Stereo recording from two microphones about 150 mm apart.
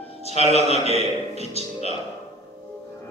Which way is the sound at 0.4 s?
45° left (ahead or behind).